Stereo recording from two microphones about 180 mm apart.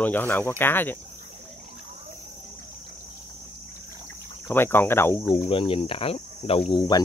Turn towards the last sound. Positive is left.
turn(degrees=20)  # may be behind; listen again after turning